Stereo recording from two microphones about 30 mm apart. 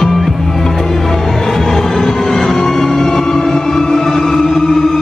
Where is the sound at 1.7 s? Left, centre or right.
Centre.